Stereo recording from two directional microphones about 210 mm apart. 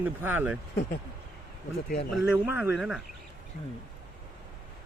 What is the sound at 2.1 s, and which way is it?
Speech, 5° right (ahead or behind).